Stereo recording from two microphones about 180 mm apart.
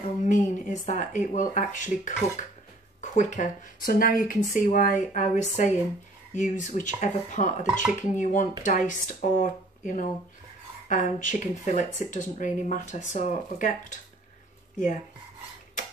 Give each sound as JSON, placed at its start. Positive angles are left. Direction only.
{"t": 0.2, "sound": "speech", "side_deg": 45}